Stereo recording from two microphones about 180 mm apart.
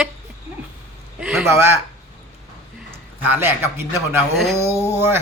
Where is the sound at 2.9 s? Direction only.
10° right (ahead or behind).